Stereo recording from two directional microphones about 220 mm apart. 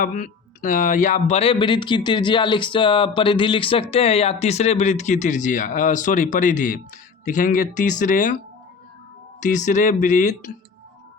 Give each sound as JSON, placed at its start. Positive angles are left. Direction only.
{"t": 0.0, "sound": "speech", "side_deg": 40}
{"t": 9.4, "sound": "speech", "side_deg": 35}